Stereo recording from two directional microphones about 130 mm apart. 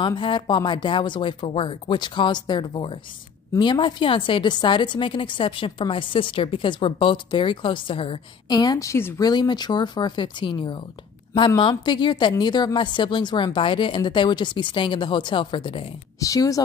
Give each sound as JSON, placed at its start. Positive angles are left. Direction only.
{"t": 0.0, "sound": "a woman's voice", "side_deg": 35}
{"t": 8.5, "sound": "a woman's voice", "side_deg": 30}
{"t": 9.2, "sound": "a woman's voice", "side_deg": 35}
{"t": 16.2, "sound": "a woman's voice", "side_deg": 25}